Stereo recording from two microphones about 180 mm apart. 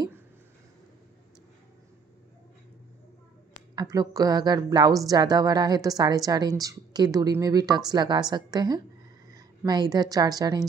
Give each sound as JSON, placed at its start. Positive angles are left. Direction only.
{"t": 3.7, "sound": "a woman's voice", "side_deg": -20}